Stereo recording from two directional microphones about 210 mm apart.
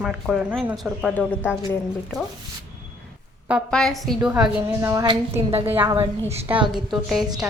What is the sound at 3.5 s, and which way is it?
A woman's voice, 5° left (ahead or behind).